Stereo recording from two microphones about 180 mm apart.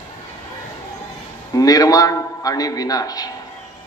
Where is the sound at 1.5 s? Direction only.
20° left (ahead or behind).